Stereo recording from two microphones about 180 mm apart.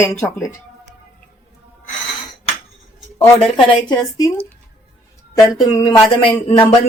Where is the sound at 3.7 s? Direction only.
25° left (ahead or behind).